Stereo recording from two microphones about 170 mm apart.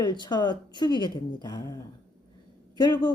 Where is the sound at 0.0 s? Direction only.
25° left (ahead or behind).